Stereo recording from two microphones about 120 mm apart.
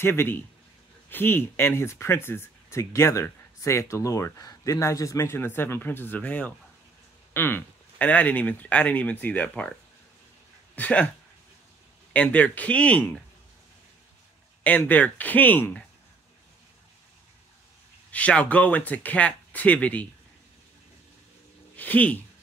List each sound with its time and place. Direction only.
0.0 s speech: 20° left (ahead or behind)
10.8 s speech: 10° left (ahead or behind)
12.1 s speech: 10° left (ahead or behind)
14.6 s speech: 15° left (ahead or behind)
18.1 s speech: 10° left (ahead or behind)
21.7 s speech: 15° left (ahead or behind)